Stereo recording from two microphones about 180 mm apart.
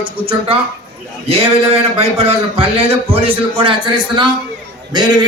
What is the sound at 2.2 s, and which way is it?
A man's voice, 30° right (ahead or behind).